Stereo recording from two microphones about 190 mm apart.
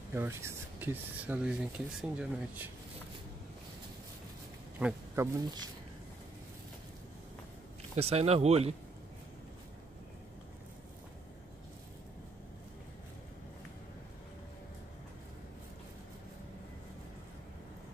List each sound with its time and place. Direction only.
0.1 s speech: 10° right (ahead or behind)
4.7 s speech: 10° right (ahead or behind)
7.9 s speech: 35° right (ahead or behind)